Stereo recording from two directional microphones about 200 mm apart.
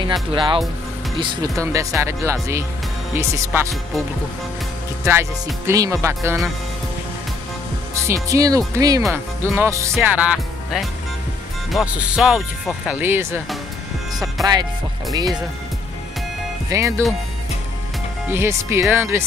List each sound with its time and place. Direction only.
0.3 s speech: 25° right (ahead or behind)
1.6 s music: 15° right (ahead or behind)
5.1 s music: 15° right (ahead or behind)
7.9 s music: 15° right (ahead or behind)
11.7 s speech: 5° right (ahead or behind)
14.4 s speech: 20° right (ahead or behind)
16.6 s speech: 15° right (ahead or behind)
18.3 s music: 15° right (ahead or behind)